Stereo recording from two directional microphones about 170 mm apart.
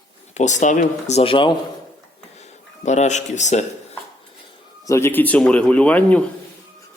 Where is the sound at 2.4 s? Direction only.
40° left (ahead or behind).